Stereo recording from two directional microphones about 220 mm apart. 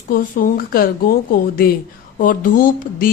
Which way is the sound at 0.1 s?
40° left (ahead or behind).